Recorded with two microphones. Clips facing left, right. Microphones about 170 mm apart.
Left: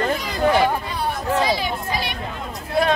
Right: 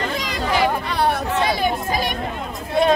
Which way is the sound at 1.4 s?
55° right (ahead or behind).